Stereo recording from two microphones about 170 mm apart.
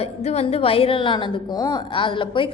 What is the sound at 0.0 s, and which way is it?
A woman's voice, 35° left (ahead or behind).